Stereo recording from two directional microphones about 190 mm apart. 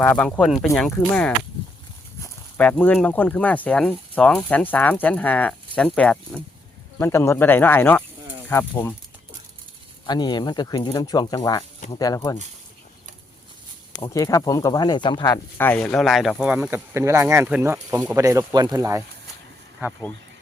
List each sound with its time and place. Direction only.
0.0 s speech: 5° left (ahead or behind)
10.1 s speech: 20° left (ahead or behind)
14.0 s speech: 15° left (ahead or behind); by 19.0 s 15° right (ahead or behind)